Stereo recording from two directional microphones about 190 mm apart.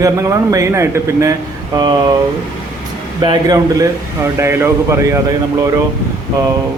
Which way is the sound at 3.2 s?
25° right (ahead or behind).